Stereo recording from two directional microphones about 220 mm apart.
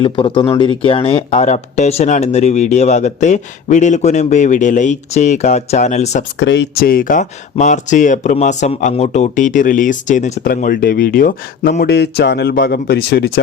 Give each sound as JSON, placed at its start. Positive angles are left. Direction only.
{"t": 0.0, "sound": "speech", "side_deg": 25}
{"t": 6.4, "sound": "speech", "side_deg": 55}